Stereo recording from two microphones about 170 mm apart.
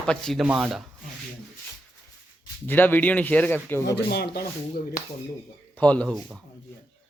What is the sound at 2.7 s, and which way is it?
Speech, 10° left (ahead or behind).